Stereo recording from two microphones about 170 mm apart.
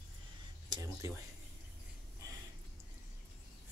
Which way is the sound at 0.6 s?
25° right (ahead or behind).